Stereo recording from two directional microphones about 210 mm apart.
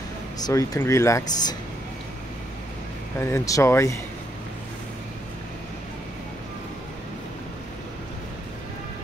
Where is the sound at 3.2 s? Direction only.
15° left (ahead or behind).